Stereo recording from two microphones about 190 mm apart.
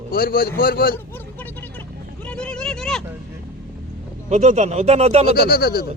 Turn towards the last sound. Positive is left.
turn(degrees=55)  # may be behind; listen again after turning